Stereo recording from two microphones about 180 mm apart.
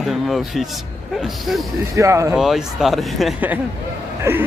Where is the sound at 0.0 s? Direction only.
Centre (ahead or behind).